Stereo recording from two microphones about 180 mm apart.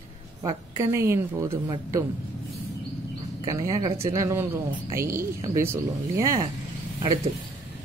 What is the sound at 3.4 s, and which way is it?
A man's voice, 20° right (ahead or behind).